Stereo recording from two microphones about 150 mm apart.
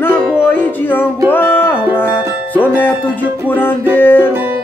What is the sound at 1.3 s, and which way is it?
Music, 15° left (ahead or behind).